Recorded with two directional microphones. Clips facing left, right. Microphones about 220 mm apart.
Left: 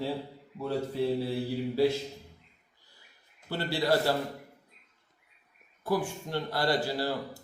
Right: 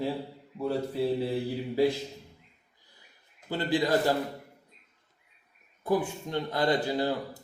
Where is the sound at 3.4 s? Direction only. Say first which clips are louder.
Right 1 dB; 15° right (ahead or behind).